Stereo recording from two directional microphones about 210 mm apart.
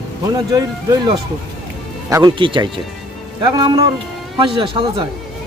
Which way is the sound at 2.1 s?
20° right (ahead or behind).